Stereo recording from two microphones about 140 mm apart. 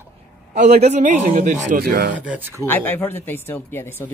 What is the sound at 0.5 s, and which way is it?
A man's voice, 55° right (ahead or behind).